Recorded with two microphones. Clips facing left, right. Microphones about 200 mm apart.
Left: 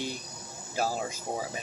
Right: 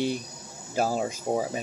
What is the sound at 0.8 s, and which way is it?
Speech, 45° right (ahead or behind).